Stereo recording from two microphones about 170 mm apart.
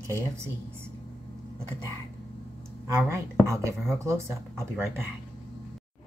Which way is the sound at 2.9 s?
15° right (ahead or behind).